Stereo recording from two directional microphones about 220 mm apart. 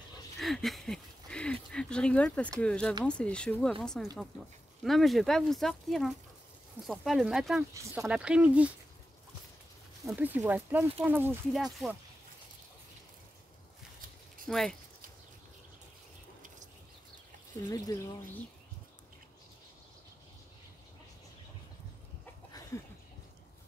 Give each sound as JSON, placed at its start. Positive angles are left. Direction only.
{"t": 0.4, "sound": "a sound", "side_deg": 0}
{"t": 2.6, "sound": "speech", "side_deg": 5}
{"t": 7.7, "sound": "speech", "side_deg": -15}
{"t": 10.0, "sound": "speech", "side_deg": -5}
{"t": 14.5, "sound": "speech", "side_deg": 0}
{"t": 17.6, "sound": "speech", "side_deg": 15}
{"t": 22.2, "sound": "a sound", "side_deg": 15}